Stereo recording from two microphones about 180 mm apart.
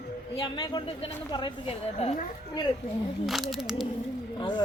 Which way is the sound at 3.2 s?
Centre (ahead or behind).